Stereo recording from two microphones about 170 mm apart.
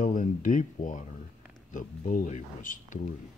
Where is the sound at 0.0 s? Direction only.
50° left (ahead or behind).